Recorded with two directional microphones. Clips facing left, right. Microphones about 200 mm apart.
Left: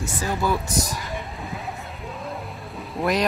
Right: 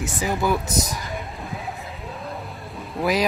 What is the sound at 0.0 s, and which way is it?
Speech, 15° right (ahead or behind).